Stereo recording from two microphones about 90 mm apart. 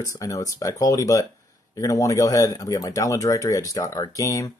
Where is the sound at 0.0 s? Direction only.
40° left (ahead or behind).